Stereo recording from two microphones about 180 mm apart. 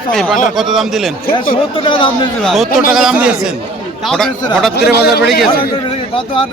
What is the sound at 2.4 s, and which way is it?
Speech, centre (ahead or behind).